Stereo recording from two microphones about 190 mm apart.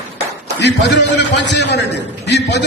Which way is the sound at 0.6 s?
65° left (ahead or behind).